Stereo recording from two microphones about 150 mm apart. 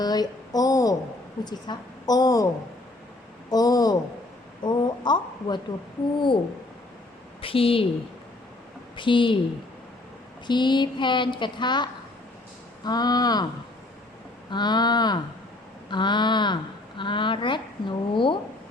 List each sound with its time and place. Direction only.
0.0 s a woman's voice: 25° left (ahead or behind)
3.5 s a woman's voice: 25° left (ahead or behind)
7.4 s a woman's voice: 40° left (ahead or behind)
9.0 s a woman's voice: 35° left (ahead or behind)
10.4 s a woman's voice: 30° left (ahead or behind)
14.5 s a woman's voice: 30° left (ahead or behind)